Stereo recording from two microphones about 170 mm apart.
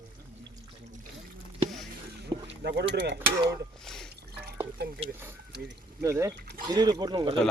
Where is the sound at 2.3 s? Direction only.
30° right (ahead or behind).